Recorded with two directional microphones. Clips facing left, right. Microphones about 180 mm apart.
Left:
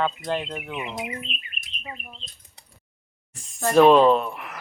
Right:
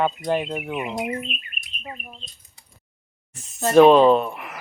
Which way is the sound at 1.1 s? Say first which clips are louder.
Right 6 dB; 50° right (ahead or behind).